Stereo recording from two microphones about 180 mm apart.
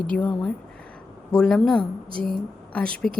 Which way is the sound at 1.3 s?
Centre (ahead or behind).